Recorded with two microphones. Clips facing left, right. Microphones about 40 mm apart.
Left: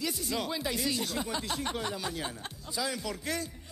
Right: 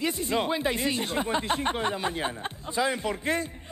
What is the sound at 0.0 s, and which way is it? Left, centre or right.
Speech, right.